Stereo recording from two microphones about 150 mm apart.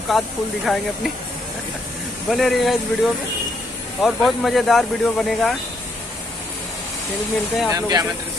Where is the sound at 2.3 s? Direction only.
Centre (ahead or behind).